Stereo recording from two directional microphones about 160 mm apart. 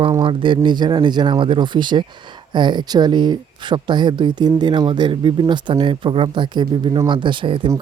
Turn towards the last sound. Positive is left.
turn(degrees=-30)  # may be behind; listen again after turning